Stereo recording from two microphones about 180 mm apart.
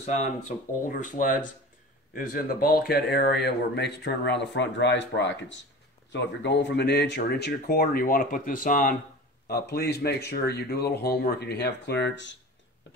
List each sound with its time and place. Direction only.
0.0 s speech: 40° left (ahead or behind)
9.5 s speech: 65° left (ahead or behind)